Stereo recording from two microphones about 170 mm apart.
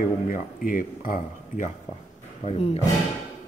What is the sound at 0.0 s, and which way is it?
Speech, 55° left (ahead or behind).